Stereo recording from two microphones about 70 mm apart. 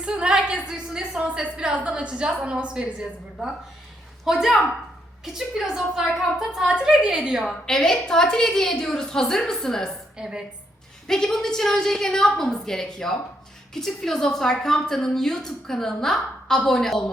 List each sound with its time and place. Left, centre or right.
0.0 s a woman's voice: centre
4.3 s a woman's voice: centre
7.7 s a woman's voice: centre
10.2 s a woman's voice: centre
11.0 s a woman's voice: centre